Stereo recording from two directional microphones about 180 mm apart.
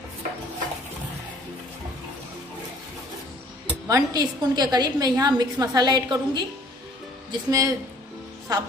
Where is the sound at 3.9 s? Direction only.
20° right (ahead or behind).